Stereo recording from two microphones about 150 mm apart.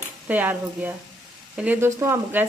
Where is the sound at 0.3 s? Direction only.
10° right (ahead or behind).